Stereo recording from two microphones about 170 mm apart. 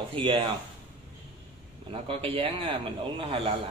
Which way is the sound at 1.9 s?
35° right (ahead or behind).